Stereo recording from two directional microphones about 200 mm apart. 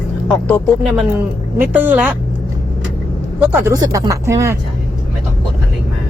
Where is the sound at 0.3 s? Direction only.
5° left (ahead or behind).